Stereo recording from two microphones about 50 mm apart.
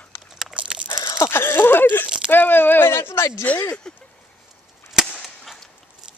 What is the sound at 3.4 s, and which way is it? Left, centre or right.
Speech, left.